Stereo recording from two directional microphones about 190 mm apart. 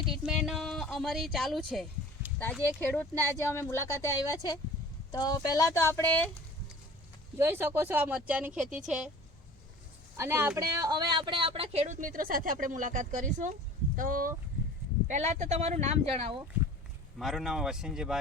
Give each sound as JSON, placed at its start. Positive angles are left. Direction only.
{"t": 0.1, "sound": "speech", "side_deg": -5}
{"t": 7.3, "sound": "speech", "side_deg": -10}
{"t": 10.2, "sound": "speech", "side_deg": -15}
{"t": 17.2, "sound": "speech", "side_deg": 0}